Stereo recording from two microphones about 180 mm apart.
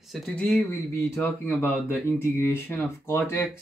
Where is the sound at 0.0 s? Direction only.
Centre (ahead or behind).